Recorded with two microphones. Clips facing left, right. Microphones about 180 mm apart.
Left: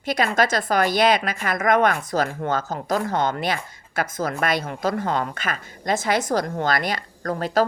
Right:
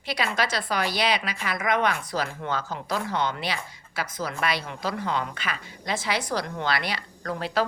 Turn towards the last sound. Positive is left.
turn(degrees=45)  # may be behind; listen again after turning